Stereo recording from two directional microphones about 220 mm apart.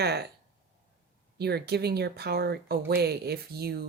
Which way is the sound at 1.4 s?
45° right (ahead or behind).